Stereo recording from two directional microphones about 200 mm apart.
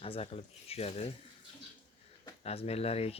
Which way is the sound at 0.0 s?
30° left (ahead or behind).